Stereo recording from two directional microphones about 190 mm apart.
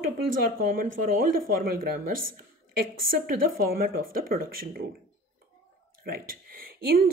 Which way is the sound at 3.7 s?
50° right (ahead or behind).